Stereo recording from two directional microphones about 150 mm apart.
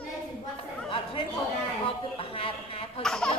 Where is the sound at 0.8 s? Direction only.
35° left (ahead or behind).